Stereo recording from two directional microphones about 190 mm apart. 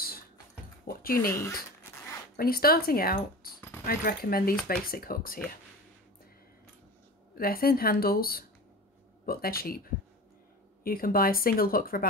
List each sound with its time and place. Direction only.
0.8 s speech: 50° left (ahead or behind)
1.3 s speech: 10° left (ahead or behind)
2.3 s speech: 50° left (ahead or behind)
7.3 s speech: 50° left (ahead or behind)
10.8 s speech: 50° left (ahead or behind)